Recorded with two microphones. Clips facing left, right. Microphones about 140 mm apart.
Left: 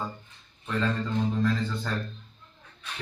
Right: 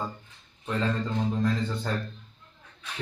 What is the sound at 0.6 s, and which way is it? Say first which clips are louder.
A man's voice: even; 20° right (ahead or behind).